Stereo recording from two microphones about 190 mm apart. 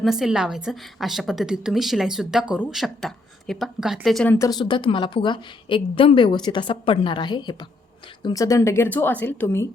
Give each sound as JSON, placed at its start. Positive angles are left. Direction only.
{"t": 0.0, "sound": "a woman's voice", "side_deg": 0}
{"t": 4.4, "sound": "a woman's voice", "side_deg": 20}